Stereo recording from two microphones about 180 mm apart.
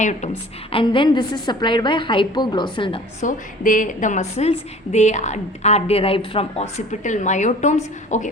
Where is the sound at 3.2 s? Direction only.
45° left (ahead or behind).